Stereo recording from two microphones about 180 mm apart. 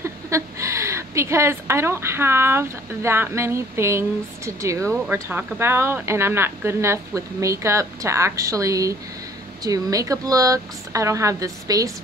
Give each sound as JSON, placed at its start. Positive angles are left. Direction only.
{"t": 0.0, "sound": "speech", "side_deg": -15}